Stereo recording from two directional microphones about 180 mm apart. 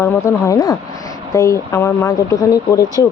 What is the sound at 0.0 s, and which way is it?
Speech, 15° left (ahead or behind).